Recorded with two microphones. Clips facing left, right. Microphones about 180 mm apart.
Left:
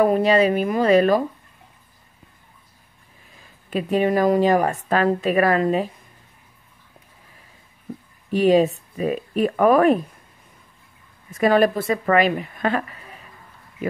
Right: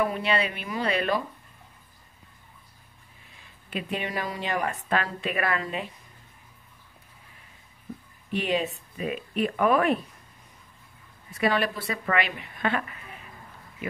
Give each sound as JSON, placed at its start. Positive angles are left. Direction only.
{"t": 0.0, "sound": "a woman's voice", "side_deg": 40}
{"t": 3.7, "sound": "a woman's voice", "side_deg": 40}
{"t": 8.3, "sound": "speech", "side_deg": 40}
{"t": 11.3, "sound": "a woman's voice", "side_deg": 45}